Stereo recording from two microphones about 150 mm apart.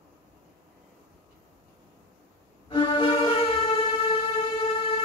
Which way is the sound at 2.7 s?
35° left (ahead or behind).